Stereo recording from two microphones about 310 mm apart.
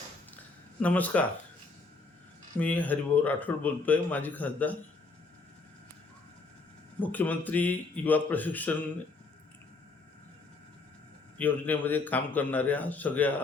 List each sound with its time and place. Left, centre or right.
0.8 s a man's voice: centre
2.6 s a man's voice: centre
7.0 s a man's voice: centre
11.3 s a man's voice: centre